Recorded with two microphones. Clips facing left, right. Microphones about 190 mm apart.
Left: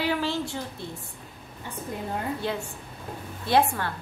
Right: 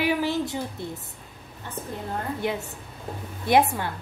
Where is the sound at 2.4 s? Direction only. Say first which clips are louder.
Right 2 dB; 20° right (ahead or behind).